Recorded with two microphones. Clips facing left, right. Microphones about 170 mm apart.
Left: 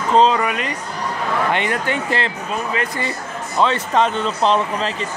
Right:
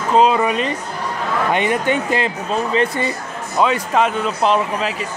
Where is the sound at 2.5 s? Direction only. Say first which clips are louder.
Right 6 dB; 25° right (ahead or behind).